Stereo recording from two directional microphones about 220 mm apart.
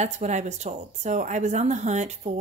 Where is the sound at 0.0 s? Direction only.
30° right (ahead or behind).